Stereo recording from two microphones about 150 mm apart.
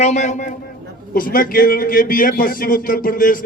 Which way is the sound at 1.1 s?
70° left (ahead or behind).